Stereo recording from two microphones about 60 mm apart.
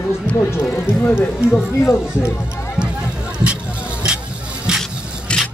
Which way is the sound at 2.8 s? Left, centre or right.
Centre.